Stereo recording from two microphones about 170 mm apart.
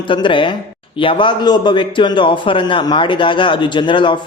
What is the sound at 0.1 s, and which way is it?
A man's voice, 30° left (ahead or behind).